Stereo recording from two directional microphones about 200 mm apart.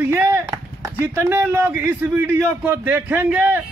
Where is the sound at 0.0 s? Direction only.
10° right (ahead or behind).